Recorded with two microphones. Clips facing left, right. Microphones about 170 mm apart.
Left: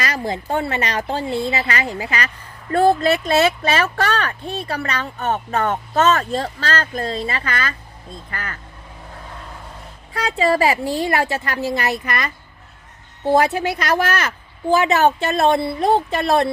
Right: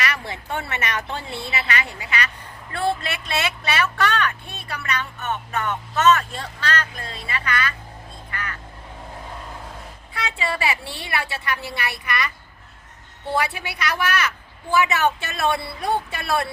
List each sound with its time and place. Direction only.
0.0 s speech: 30° left (ahead or behind)
10.2 s speech: 40° left (ahead or behind)
13.3 s a woman's voice: 45° left (ahead or behind)